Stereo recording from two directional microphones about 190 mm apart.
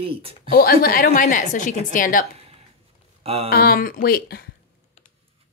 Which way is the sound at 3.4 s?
50° left (ahead or behind).